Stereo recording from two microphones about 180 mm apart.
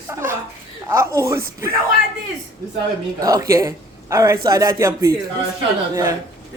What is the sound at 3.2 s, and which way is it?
Speech, 20° right (ahead or behind).